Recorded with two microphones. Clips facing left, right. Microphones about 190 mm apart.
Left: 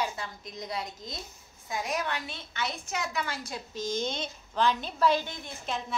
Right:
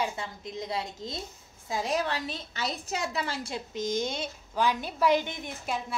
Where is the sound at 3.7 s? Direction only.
20° right (ahead or behind).